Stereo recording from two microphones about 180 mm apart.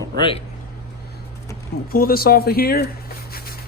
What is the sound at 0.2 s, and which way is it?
Speech, 30° left (ahead or behind).